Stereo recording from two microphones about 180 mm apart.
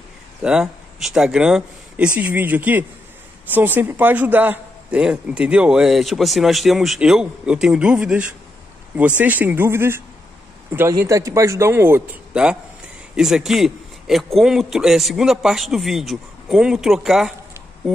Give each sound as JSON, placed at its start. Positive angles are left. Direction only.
{"t": 0.4, "sound": "a man's voice", "side_deg": -5}